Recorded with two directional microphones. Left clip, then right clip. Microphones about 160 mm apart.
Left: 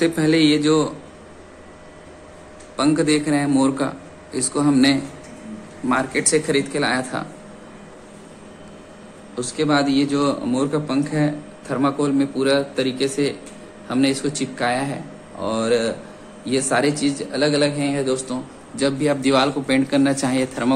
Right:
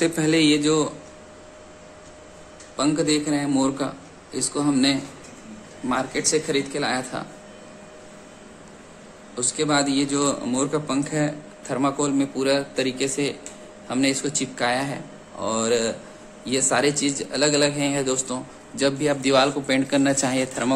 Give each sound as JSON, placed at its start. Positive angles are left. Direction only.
{"t": 0.0, "sound": "speech", "side_deg": -25}
{"t": 2.7, "sound": "a man's voice", "side_deg": -15}
{"t": 9.3, "sound": "a man's voice", "side_deg": -10}